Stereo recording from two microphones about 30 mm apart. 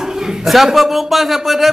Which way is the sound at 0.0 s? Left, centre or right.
Centre.